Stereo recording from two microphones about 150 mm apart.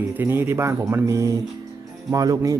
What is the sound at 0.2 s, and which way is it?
Speech, 15° right (ahead or behind).